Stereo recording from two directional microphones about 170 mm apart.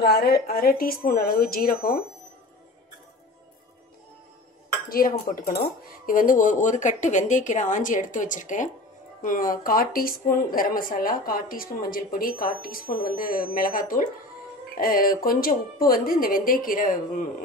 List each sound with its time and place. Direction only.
0.0 s speech: 65° left (ahead or behind)
4.8 s speech: 60° left (ahead or behind)